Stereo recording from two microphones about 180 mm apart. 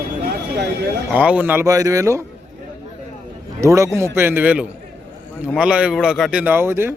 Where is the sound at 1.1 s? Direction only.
10° right (ahead or behind).